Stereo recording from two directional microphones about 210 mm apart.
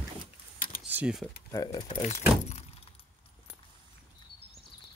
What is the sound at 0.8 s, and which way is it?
Keys jangling, 5° right (ahead or behind).